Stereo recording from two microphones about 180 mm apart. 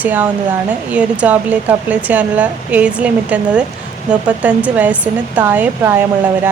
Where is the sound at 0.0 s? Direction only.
10° right (ahead or behind).